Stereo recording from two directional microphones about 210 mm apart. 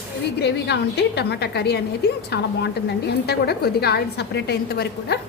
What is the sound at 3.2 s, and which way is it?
A woman's voice, 50° left (ahead or behind).